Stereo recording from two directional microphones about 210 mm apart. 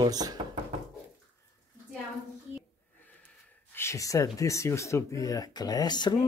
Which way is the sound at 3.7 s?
15° left (ahead or behind).